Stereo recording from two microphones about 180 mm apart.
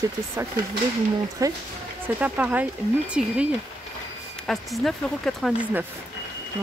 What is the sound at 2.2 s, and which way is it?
Speech, 10° right (ahead or behind).